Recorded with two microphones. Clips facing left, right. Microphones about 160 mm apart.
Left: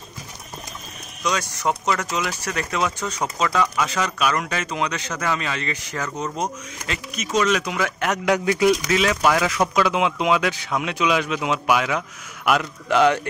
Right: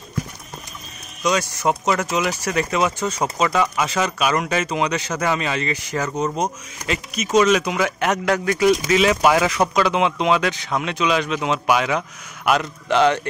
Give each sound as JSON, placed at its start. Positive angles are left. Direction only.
{"t": 1.2, "sound": "speech", "side_deg": -10}
{"t": 3.6, "sound": "speech", "side_deg": -25}
{"t": 4.0, "sound": "speech", "side_deg": -10}
{"t": 6.0, "sound": "speech", "side_deg": -25}
{"t": 6.4, "sound": "speech", "side_deg": -5}
{"t": 8.3, "sound": "speech", "side_deg": 10}
{"t": 8.8, "sound": "speech", "side_deg": -5}
{"t": 9.8, "sound": "speech", "side_deg": 5}